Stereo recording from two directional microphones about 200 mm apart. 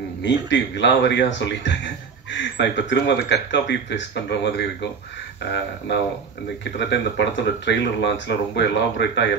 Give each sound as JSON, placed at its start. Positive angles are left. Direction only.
{"t": 0.2, "sound": "speech", "side_deg": 65}
{"t": 6.6, "sound": "speech", "side_deg": 60}